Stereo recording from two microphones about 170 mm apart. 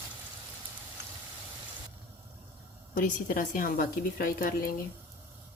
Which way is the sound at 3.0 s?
55° left (ahead or behind).